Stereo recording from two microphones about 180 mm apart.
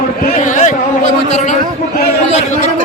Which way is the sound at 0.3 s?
40° left (ahead or behind).